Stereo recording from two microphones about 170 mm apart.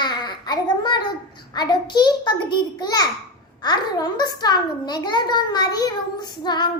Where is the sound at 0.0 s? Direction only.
25° left (ahead or behind).